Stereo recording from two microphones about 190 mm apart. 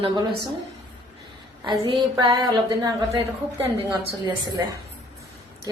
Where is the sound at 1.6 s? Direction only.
25° right (ahead or behind).